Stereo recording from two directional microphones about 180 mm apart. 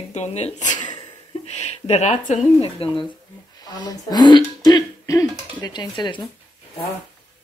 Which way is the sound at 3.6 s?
20° left (ahead or behind).